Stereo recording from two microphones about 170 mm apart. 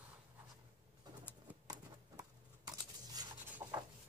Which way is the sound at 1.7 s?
20° right (ahead or behind).